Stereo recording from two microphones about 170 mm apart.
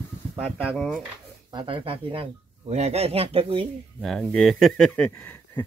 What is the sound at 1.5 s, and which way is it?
Speech, 30° right (ahead or behind).